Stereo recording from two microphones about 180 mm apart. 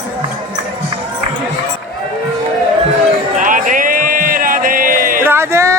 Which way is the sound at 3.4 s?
45° right (ahead or behind).